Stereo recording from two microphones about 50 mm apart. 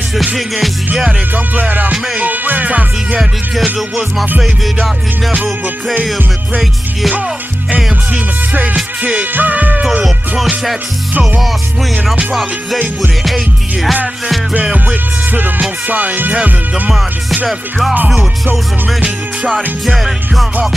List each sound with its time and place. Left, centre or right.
1.3 s music: right
7.7 s music: right
12.7 s music: right
14.6 s music: centre
15.9 s music: right
17.5 s music: centre
19.5 s music: centre